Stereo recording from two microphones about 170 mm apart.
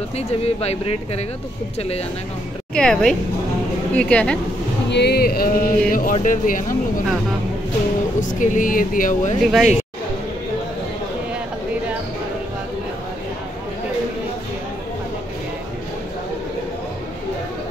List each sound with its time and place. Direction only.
0.6 s speech: 40° left (ahead or behind)
2.7 s a woman's voice: 5° left (ahead or behind)
4.8 s music: 85° left; by 6.1 s 55° left (ahead or behind)
6.1 s speech: 50° left (ahead or behind)
8.2 s speech: 50° left (ahead or behind)
9.4 s a woman's voice: centre (ahead or behind)